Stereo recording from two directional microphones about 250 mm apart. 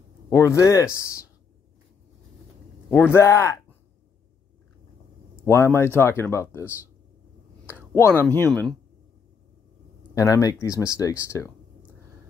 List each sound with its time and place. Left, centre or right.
0.3 s speech: centre
2.9 s speech: centre
5.4 s speech: centre
7.7 s speech: centre
10.1 s speech: centre